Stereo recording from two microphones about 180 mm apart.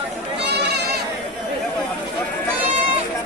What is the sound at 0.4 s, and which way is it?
Goat, 70° right (ahead or behind).